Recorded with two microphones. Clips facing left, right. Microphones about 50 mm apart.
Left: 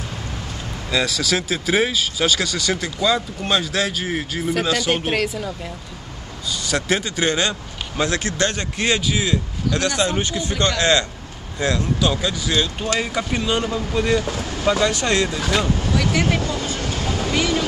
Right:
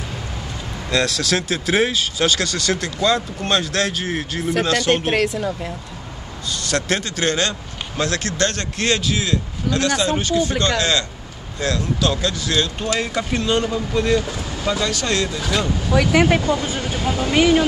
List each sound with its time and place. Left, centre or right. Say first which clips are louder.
0.8 s a man's voice: right 1 dB; centre
14.6 s a man's voice: left 3 dB; centre
15.9 s speech: right 7 dB; centre